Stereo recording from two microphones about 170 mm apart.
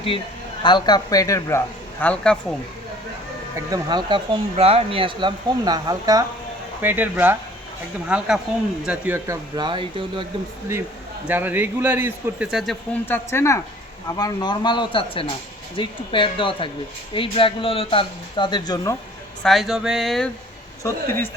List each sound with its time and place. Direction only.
0.6 s a man's voice: 25° left (ahead or behind); by 2.4 s 5° left (ahead or behind)
3.7 s a man's voice: 25° right (ahead or behind)
11.3 s a man's voice: 10° right (ahead or behind)
12.9 s a man's voice: 10° left (ahead or behind)
19.4 s speech: centre (ahead or behind)
20.8 s speech: 15° left (ahead or behind)